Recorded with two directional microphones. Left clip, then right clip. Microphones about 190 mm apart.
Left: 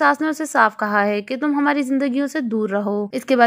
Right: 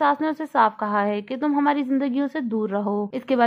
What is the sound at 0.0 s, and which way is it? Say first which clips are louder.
A woman's voice: left 4 dB; 20° left (ahead or behind).